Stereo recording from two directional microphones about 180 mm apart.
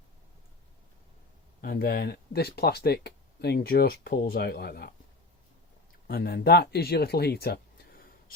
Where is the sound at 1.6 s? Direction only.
55° left (ahead or behind).